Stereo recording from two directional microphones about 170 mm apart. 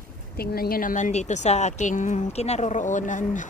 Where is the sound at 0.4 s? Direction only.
60° left (ahead or behind).